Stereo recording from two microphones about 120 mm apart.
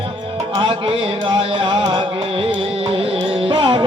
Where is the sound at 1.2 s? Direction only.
45° right (ahead or behind).